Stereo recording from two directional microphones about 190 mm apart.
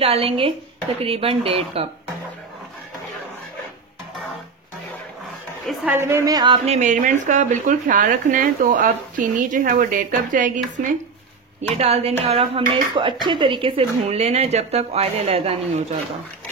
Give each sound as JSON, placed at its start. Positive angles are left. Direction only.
{"t": 0.0, "sound": "speech", "side_deg": -30}
{"t": 5.7, "sound": "a woman's voice", "side_deg": -10}
{"t": 6.5, "sound": "speech", "side_deg": -35}